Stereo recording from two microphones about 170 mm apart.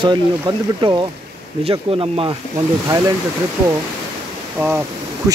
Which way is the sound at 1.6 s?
35° right (ahead or behind).